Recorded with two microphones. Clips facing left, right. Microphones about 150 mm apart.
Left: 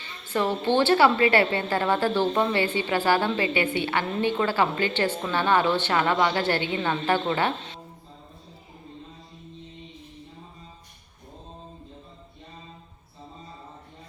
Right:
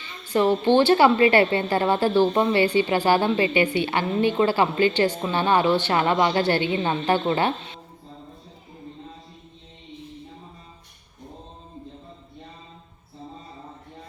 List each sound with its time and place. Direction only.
0.3 s a woman's voice: 15° right (ahead or behind)